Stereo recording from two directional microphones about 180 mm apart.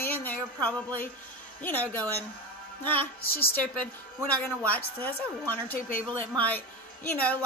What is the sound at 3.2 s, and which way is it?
Speech, 55° left (ahead or behind).